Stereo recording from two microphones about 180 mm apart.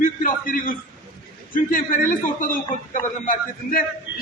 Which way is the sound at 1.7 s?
50° left (ahead or behind).